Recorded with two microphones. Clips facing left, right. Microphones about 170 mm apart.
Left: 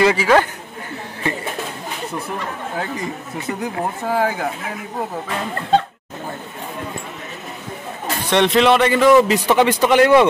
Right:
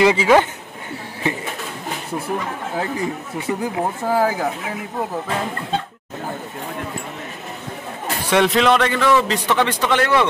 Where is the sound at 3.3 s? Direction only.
10° right (ahead or behind).